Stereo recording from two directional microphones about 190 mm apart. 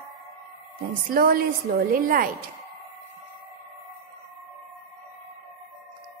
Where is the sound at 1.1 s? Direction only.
50° right (ahead or behind).